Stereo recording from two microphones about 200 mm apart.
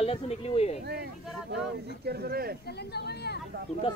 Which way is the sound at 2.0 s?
50° right (ahead or behind).